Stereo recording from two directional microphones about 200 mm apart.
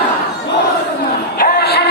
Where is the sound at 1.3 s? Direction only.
55° left (ahead or behind).